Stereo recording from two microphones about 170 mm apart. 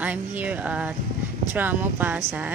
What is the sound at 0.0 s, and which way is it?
Speech, 10° right (ahead or behind).